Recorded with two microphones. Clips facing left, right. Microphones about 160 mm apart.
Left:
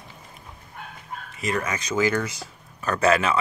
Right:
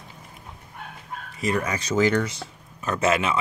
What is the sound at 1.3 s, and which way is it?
Speech, 35° right (ahead or behind).